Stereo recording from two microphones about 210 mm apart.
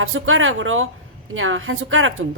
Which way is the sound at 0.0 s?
75° right (ahead or behind).